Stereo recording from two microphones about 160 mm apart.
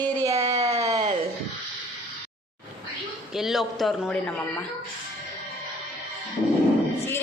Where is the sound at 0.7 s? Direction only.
20° right (ahead or behind).